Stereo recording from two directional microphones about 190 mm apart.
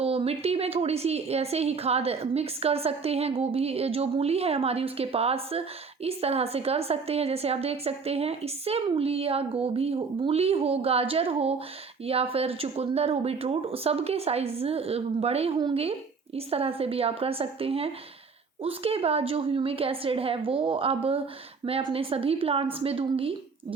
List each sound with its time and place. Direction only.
0.0 s a woman's voice: 30° right (ahead or behind)